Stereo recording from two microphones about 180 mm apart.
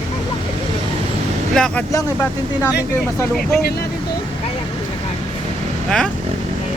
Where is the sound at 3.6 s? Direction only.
60° left (ahead or behind).